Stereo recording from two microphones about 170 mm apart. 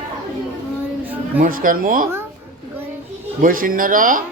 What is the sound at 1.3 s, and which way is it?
Speech, 55° right (ahead or behind).